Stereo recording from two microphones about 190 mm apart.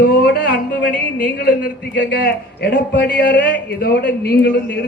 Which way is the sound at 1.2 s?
50° left (ahead or behind).